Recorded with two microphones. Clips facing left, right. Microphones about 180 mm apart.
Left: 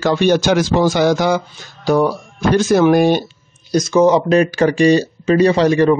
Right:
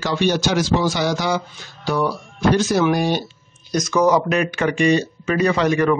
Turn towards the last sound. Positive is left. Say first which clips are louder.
# left 5 dB
turn(degrees=30)  # may be behind; listen again after turning